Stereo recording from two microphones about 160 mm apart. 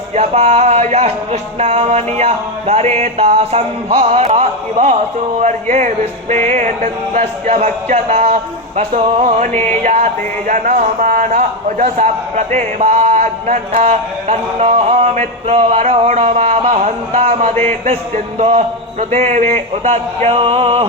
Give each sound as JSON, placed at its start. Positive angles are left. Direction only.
{"t": 0.1, "sound": "speech", "side_deg": -40}
{"t": 5.4, "sound": "music", "side_deg": -50}
{"t": 17.8, "sound": "speech", "side_deg": -45}